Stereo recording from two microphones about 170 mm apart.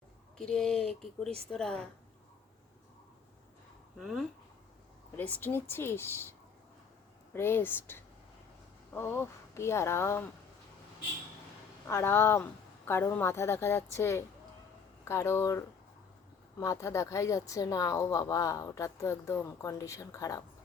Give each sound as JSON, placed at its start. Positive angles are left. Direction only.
{"t": 0.3, "sound": "speech", "side_deg": 5}
{"t": 3.9, "sound": "speech", "side_deg": -5}
{"t": 5.1, "sound": "a woman's voice", "side_deg": 10}
{"t": 7.3, "sound": "a woman's voice", "side_deg": 15}
{"t": 11.9, "sound": "a woman's voice", "side_deg": 15}